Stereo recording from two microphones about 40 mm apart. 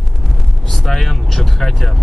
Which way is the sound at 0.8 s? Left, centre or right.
Centre.